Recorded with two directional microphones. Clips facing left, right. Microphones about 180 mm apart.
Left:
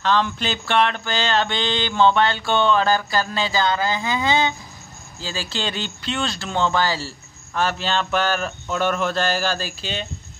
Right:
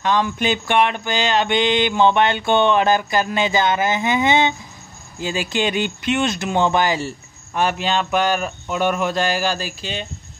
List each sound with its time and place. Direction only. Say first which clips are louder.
0.0 s mantra: right 2 dB; 15° right (ahead or behind)
5.2 s speech: right 6 dB; 15° right (ahead or behind)